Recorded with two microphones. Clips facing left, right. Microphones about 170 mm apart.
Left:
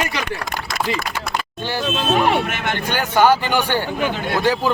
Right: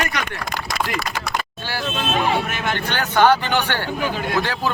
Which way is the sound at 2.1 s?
70° left (ahead or behind).